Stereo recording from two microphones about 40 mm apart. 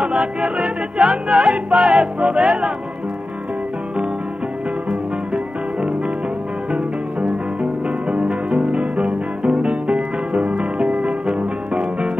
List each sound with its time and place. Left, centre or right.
0.0 s music: right
5.3 s music: right